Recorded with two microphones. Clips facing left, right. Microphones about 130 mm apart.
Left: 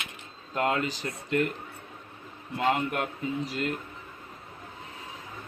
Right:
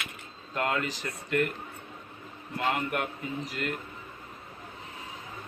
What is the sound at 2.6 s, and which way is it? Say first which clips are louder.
A man's voice: left 3 dB; 25° left (ahead or behind).